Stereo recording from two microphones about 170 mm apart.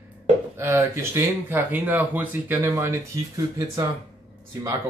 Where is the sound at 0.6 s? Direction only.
15° right (ahead or behind).